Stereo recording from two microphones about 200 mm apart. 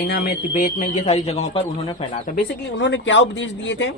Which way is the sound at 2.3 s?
55° left (ahead or behind).